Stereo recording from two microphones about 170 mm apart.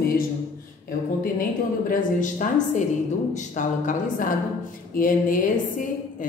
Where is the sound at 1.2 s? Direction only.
55° left (ahead or behind).